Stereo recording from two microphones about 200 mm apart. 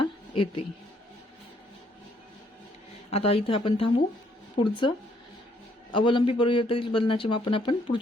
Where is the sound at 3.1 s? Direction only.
30° left (ahead or behind).